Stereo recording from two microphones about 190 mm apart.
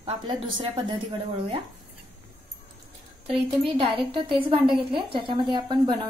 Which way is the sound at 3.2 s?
30° right (ahead or behind).